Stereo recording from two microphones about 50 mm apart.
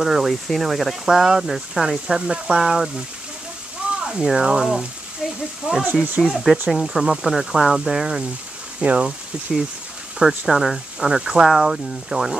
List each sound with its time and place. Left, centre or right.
0.0 s speech: centre
4.0 s speech: centre
5.2 s sizzle: centre
5.7 s speech: right
6.2 s speech: centre
8.8 s speech: right
10.1 s speech: centre